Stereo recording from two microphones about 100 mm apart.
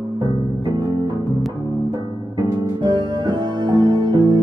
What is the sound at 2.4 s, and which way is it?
Music, 40° right (ahead or behind).